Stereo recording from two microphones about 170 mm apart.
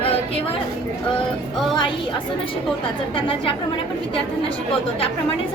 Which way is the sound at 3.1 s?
30° left (ahead or behind).